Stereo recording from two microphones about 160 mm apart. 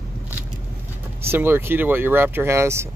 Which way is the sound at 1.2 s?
15° right (ahead or behind).